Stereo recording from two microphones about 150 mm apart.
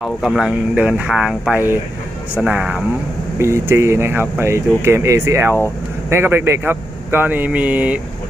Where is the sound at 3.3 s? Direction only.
15° right (ahead or behind).